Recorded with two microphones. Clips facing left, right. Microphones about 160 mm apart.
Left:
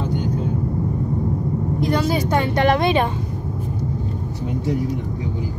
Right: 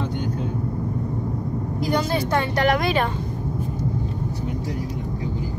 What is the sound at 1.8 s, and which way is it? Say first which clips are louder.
Speech: left 2 dB; centre (ahead or behind).